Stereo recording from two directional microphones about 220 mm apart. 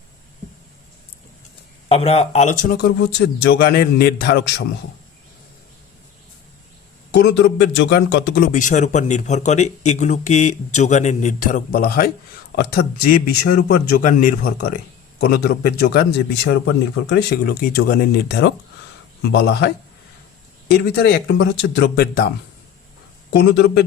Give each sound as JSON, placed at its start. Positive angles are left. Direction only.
{"t": 1.9, "sound": "speech", "side_deg": 25}
{"t": 7.1, "sound": "speech", "side_deg": 50}
{"t": 23.3, "sound": "speech", "side_deg": 50}